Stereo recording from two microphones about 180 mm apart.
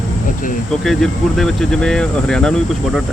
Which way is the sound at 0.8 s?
Centre (ahead or behind).